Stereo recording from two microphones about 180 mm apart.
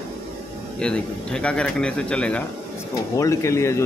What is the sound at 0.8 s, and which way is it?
Speech, 5° left (ahead or behind).